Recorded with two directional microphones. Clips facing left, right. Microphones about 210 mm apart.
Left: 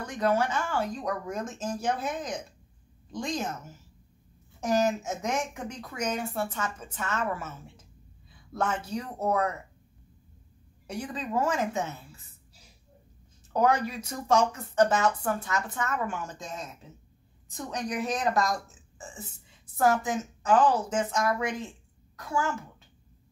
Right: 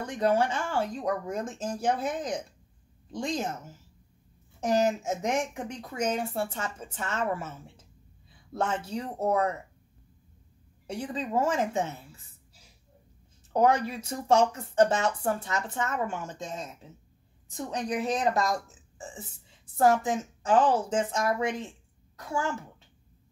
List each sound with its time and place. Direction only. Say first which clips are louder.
0.0 s a woman's voice: right 1 dB; 30° right (ahead or behind)
4.6 s a woman's voice: right 1 dB; 30° right (ahead or behind)
10.9 s a woman's voice: right 1 dB; 25° right (ahead or behind)
13.5 s a woman's voice: right 1 dB; 25° right (ahead or behind)